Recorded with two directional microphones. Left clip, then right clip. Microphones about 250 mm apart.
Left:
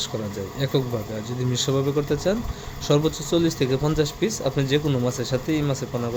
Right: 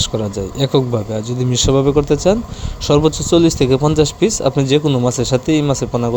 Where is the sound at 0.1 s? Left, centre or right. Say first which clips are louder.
Right 9 dB; right.